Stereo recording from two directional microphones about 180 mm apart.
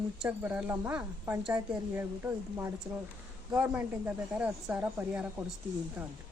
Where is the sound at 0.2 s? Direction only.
5° right (ahead or behind).